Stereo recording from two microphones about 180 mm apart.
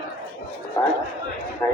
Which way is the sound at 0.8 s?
15° left (ahead or behind).